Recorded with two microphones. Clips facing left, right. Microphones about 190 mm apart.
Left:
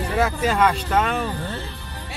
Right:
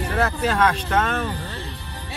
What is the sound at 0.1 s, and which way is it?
Speech, 10° left (ahead or behind).